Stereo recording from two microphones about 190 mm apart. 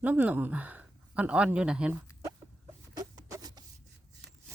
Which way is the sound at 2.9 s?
20° right (ahead or behind).